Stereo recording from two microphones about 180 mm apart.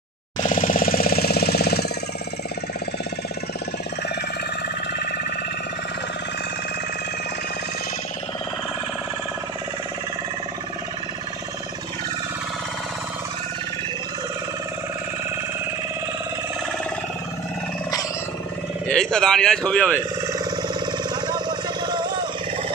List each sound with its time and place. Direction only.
0.4 s jackhammer: 50° left (ahead or behind)
18.9 s a man's voice: 5° left (ahead or behind)
21.1 s vehicle: 25° right (ahead or behind)